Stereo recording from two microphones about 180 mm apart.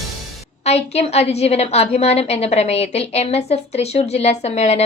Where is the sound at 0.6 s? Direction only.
35° left (ahead or behind).